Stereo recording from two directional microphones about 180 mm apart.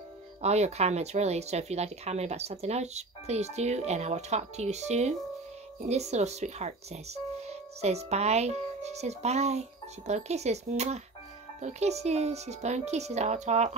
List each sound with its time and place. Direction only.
0.4 s speech: 35° right (ahead or behind)